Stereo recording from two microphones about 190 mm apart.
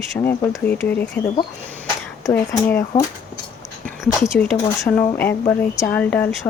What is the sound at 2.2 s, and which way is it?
Speech, 15° left (ahead or behind).